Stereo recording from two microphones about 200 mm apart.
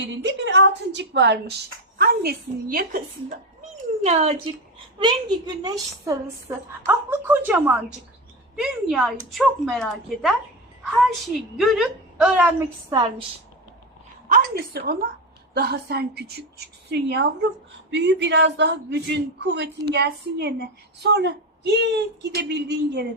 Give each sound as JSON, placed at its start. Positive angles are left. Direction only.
{"t": 0.0, "sound": "speech", "side_deg": -60}
{"t": 4.0, "sound": "a woman's voice", "side_deg": -30}
{"t": 12.9, "sound": "a woman's voice", "side_deg": -20}
{"t": 14.3, "sound": "speech", "side_deg": -50}